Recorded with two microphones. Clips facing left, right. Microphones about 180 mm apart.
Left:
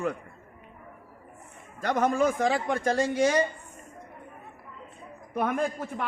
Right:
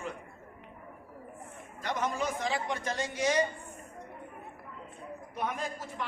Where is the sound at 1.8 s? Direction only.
50° left (ahead or behind).